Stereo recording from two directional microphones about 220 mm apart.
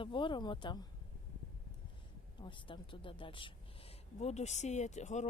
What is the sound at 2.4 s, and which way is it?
Speech, 20° left (ahead or behind).